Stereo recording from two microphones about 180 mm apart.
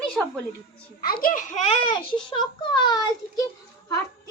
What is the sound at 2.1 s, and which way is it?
A child's voice, 25° left (ahead or behind).